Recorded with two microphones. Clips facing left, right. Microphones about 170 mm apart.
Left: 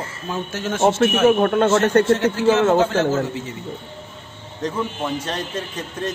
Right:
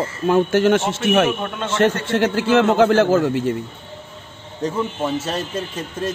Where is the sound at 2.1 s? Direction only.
70° right (ahead or behind).